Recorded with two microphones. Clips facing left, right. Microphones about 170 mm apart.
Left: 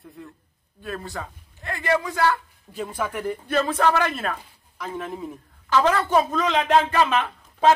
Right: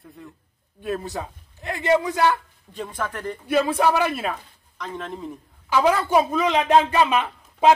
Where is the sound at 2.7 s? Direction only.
5° left (ahead or behind).